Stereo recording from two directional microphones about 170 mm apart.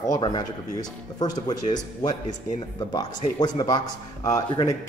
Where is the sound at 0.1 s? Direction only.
25° left (ahead or behind).